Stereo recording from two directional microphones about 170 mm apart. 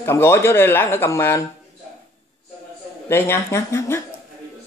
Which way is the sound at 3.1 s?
15° left (ahead or behind).